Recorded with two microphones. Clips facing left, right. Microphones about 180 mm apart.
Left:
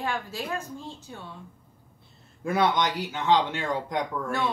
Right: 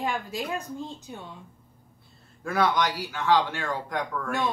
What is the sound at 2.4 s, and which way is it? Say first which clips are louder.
Speech: left 1 dB; 20° left (ahead or behind).